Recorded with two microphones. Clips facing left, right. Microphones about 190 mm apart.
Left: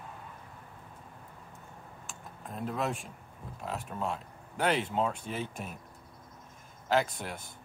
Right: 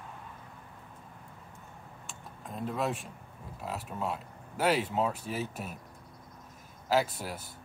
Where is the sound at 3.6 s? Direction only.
5° right (ahead or behind).